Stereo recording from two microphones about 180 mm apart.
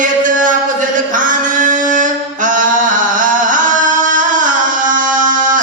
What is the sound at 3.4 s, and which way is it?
Carnatic music, 45° right (ahead or behind).